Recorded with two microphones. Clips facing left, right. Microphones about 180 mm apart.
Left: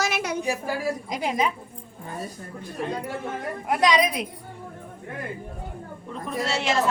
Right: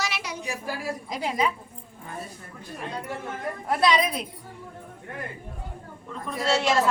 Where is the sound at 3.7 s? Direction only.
15° left (ahead or behind).